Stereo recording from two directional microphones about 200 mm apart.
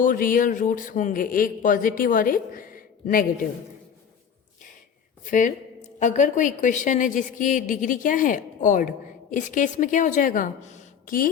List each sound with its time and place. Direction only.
0.0 s speech: 45° left (ahead or behind)
5.3 s a woman's voice: 40° left (ahead or behind)